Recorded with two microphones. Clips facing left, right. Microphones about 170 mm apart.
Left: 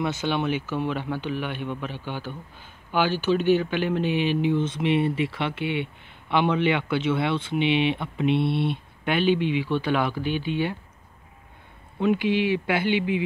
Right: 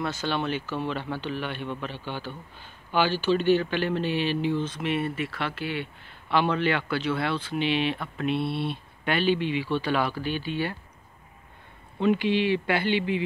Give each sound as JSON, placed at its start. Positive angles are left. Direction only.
{"t": 0.0, "sound": "speech", "side_deg": 15}
{"t": 9.3, "sound": "speech", "side_deg": 55}
{"t": 9.7, "sound": "speech", "side_deg": 15}
{"t": 12.0, "sound": "speech", "side_deg": 10}